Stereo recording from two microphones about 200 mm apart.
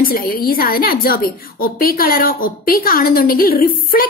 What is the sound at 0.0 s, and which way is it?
A woman's voice, 45° left (ahead or behind).